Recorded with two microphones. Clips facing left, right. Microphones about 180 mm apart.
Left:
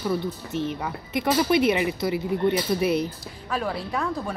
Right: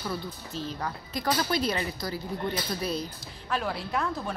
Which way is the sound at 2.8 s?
70° left (ahead or behind).